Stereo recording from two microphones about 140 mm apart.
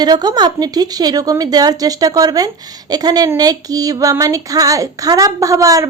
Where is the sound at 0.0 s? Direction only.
30° right (ahead or behind).